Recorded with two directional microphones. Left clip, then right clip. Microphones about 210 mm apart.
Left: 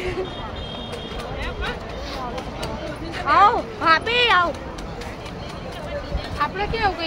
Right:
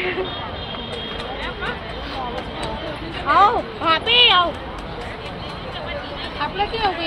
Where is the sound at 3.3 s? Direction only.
25° right (ahead or behind).